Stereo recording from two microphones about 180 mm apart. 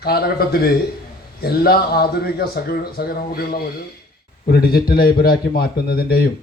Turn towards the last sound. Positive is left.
turn(degrees=60)  # may be behind; listen again after turning